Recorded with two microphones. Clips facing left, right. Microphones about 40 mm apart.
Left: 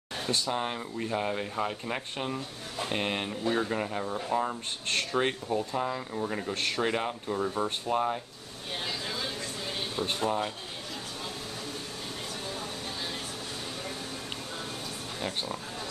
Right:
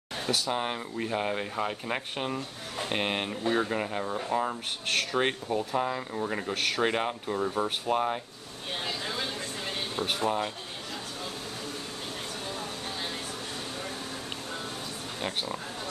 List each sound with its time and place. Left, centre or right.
0.5 s speech: centre
10.2 s speech: centre